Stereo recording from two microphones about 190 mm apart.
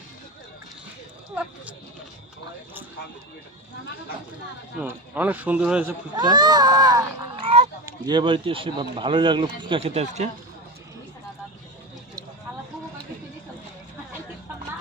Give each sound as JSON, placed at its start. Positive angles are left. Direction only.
{"t": 4.8, "sound": "speech", "side_deg": -10}
{"t": 6.1, "sound": "speech", "side_deg": -20}